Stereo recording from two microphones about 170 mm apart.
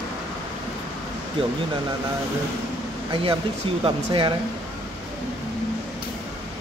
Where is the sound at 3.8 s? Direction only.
30° right (ahead or behind).